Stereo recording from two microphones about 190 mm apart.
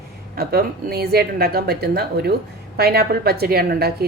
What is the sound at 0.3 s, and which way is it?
A woman's voice, 55° right (ahead or behind).